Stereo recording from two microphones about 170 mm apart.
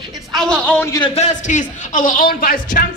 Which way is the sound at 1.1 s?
45° left (ahead or behind).